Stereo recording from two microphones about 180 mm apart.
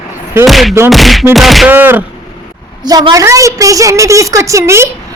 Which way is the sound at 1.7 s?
10° right (ahead or behind).